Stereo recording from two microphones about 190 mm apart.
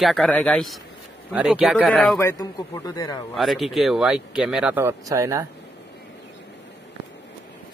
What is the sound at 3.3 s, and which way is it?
Speech, centre (ahead or behind).